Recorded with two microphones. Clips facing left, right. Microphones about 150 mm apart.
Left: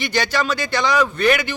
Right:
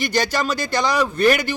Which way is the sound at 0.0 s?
40° right (ahead or behind).